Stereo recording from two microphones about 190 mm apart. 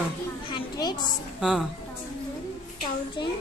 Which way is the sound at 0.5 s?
20° left (ahead or behind).